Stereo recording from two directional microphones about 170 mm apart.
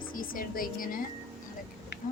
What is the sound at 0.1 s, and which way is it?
Speech, 55° left (ahead or behind).